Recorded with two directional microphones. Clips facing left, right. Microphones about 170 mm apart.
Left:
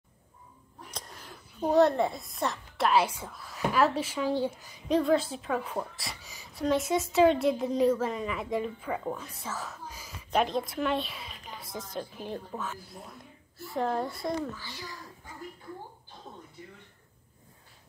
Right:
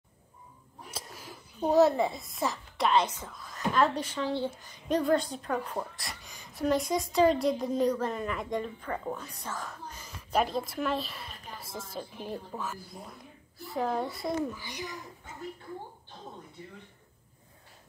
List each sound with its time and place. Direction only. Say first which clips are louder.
0.9 s a child's voice: right 1 dB; 5° right (ahead or behind); by 4.5 s 10° left (ahead or behind)
4.8 s a woman's voice: left 1 dB; centre (ahead or behind)
14.4 s a child's voice: right 3 dB; 15° right (ahead or behind)